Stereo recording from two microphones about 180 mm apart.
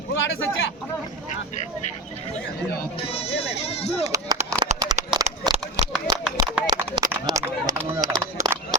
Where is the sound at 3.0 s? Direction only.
35° left (ahead or behind).